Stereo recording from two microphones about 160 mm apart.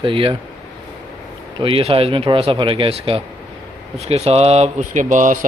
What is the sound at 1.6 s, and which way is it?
Speech, 35° right (ahead or behind).